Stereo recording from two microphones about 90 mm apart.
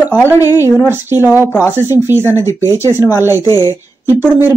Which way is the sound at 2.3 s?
35° left (ahead or behind).